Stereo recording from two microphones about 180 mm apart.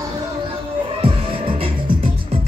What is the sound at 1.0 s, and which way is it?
Music, 30° right (ahead or behind).